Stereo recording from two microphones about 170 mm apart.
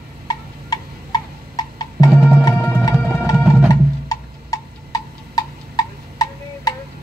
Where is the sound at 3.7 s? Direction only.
20° left (ahead or behind).